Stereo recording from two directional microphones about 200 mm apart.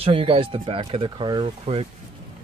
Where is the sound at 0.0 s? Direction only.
25° right (ahead or behind).